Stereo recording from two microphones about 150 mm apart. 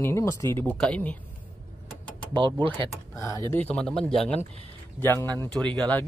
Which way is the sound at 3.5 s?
10° left (ahead or behind).